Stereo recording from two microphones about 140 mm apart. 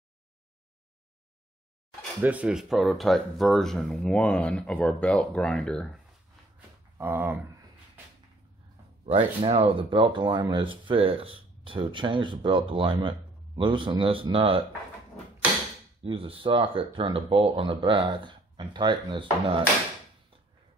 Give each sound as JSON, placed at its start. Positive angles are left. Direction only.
{"t": 2.2, "sound": "speech", "side_deg": -10}
{"t": 7.0, "sound": "speech", "side_deg": -15}
{"t": 9.0, "sound": "speech", "side_deg": -45}
{"t": 16.0, "sound": "speech", "side_deg": -40}